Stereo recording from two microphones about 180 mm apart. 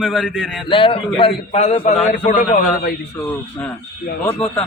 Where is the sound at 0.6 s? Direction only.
30° left (ahead or behind); by 2.9 s 45° left (ahead or behind).